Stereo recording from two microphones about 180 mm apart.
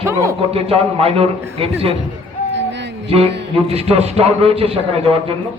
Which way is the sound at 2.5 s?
80° right.